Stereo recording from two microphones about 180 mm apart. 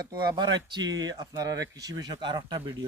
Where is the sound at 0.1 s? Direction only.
25° right (ahead or behind).